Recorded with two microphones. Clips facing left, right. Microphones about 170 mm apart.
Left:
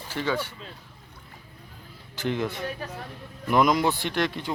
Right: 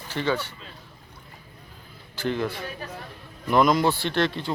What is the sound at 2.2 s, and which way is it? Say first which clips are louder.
A man's voice: right 1 dB; 20° left (ahead or behind).